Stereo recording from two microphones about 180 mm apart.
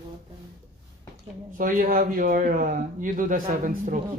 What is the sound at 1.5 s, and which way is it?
A man's voice, 50° right (ahead or behind).